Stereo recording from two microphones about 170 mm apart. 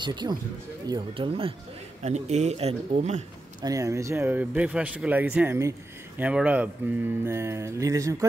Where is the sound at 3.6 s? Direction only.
20° right (ahead or behind).